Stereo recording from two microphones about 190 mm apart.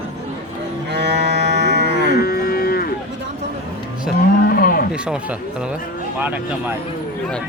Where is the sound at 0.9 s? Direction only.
65° right (ahead or behind).